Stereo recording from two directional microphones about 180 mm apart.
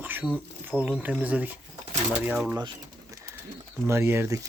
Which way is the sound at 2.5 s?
25° right (ahead or behind).